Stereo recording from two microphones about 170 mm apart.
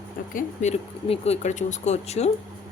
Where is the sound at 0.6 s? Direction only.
45° left (ahead or behind).